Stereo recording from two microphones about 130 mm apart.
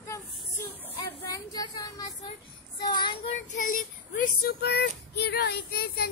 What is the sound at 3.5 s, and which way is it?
Child singing, 90° left.